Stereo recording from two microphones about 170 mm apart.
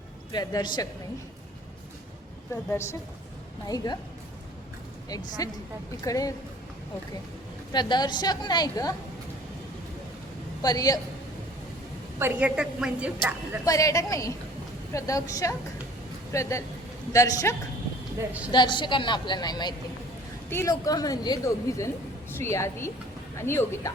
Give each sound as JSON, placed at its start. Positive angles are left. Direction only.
{"t": 0.3, "sound": "speech", "side_deg": 25}
{"t": 2.6, "sound": "speech", "side_deg": 15}
{"t": 5.4, "sound": "speech", "side_deg": 20}
{"t": 7.7, "sound": "speech", "side_deg": 25}
{"t": 10.6, "sound": "speech", "side_deg": 20}
{"t": 12.2, "sound": "a woman's voice", "side_deg": -10}
{"t": 13.7, "sound": "speech", "side_deg": 20}
{"t": 18.2, "sound": "a woman's voice", "side_deg": -10}
{"t": 18.5, "sound": "a woman's voice", "side_deg": 25}